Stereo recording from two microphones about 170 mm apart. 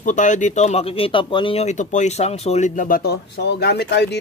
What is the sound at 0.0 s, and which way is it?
Speech, 50° left (ahead or behind).